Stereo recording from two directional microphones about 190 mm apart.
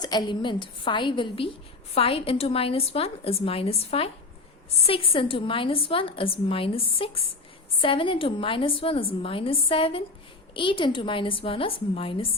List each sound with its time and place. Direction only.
0.0 s a woman's voice: 20° left (ahead or behind)